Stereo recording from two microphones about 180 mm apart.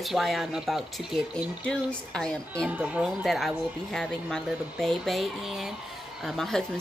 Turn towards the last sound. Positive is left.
turn(degrees=0)  # may be behind; listen again after turning